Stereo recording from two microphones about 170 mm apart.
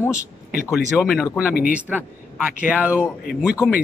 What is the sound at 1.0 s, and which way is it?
Speech, 15° left (ahead or behind).